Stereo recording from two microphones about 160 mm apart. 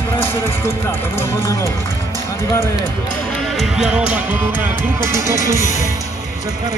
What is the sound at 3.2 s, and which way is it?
Music, 5° left (ahead or behind).